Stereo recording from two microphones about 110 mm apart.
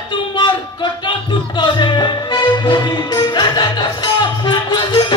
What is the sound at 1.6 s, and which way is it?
Music, 45° left (ahead or behind).